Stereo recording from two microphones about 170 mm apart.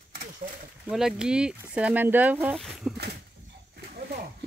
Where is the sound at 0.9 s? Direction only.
5° right (ahead or behind).